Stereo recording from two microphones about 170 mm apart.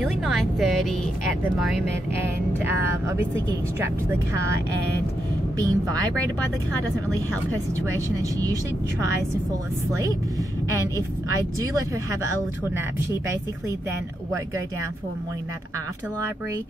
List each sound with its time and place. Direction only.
0.0 s a woman's voice: centre (ahead or behind)
2.6 s speech: 15° right (ahead or behind)
5.6 s a woman's voice: 25° right (ahead or behind)
9.5 s a woman's voice: 20° right (ahead or behind)